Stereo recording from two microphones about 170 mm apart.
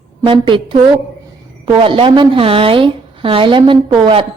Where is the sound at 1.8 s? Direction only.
30° right (ahead or behind).